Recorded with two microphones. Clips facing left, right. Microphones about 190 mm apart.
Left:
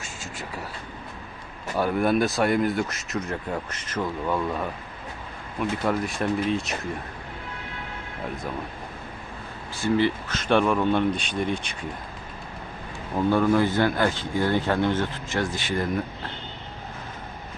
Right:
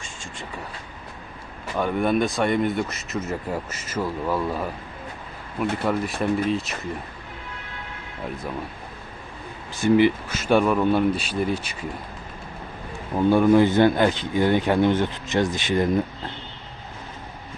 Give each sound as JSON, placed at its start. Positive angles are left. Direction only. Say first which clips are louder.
{"t": 1.7, "sound": "speech", "louder": "even", "side_deg": 5}
{"t": 5.7, "sound": "speech", "louder": "even", "side_deg": 0}
{"t": 9.7, "sound": "speech", "louder": "right 5 dB", "side_deg": -15}
{"t": 13.1, "sound": "speech", "louder": "right 4 dB", "side_deg": -15}